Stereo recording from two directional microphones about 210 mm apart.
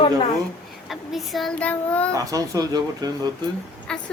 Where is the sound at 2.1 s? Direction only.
15° right (ahead or behind).